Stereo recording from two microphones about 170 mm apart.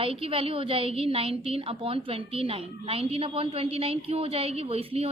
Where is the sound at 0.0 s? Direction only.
35° right (ahead or behind).